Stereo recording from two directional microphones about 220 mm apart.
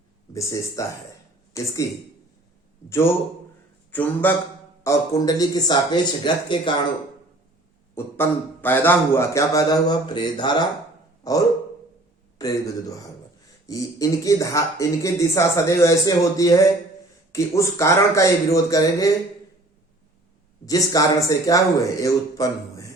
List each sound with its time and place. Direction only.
0.3 s speech: 15° left (ahead or behind)
3.9 s speech: 10° left (ahead or behind)
7.9 s speech: 10° left (ahead or behind)
20.7 s speech: 15° left (ahead or behind)